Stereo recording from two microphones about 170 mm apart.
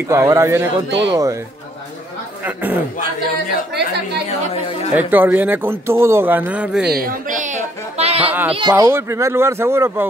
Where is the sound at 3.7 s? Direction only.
75° right (ahead or behind).